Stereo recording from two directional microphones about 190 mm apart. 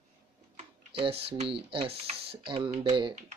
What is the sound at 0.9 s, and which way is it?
Speech, 30° right (ahead or behind).